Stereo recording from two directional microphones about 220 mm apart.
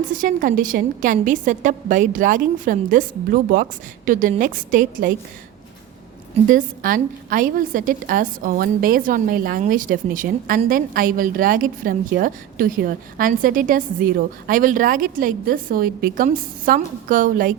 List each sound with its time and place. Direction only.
0.0 s a woman's voice: 40° right (ahead or behind)
6.5 s a woman's voice: 40° right (ahead or behind)